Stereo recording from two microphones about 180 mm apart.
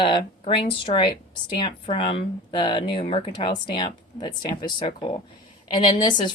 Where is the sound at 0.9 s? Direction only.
35° left (ahead or behind).